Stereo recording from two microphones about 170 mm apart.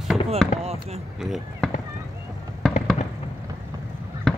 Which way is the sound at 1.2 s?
Centre (ahead or behind).